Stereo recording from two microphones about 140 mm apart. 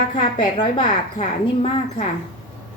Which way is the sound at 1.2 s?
55° left (ahead or behind).